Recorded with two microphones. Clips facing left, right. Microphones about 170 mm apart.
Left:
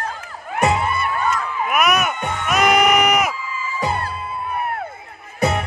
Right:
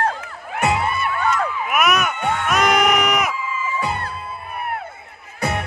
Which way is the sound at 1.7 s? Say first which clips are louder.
Left 1 dB; centre (ahead or behind).